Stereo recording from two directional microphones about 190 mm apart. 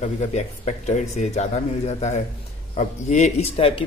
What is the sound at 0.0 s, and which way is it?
Speech, 35° left (ahead or behind).